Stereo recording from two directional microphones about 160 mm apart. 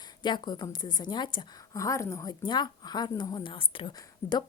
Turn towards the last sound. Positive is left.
turn(degrees=25)  # may be behind; listen again after turning